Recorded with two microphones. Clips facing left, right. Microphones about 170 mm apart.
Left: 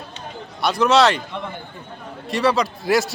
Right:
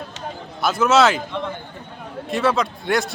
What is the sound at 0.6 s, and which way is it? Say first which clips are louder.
Speech: even; 5° right (ahead or behind).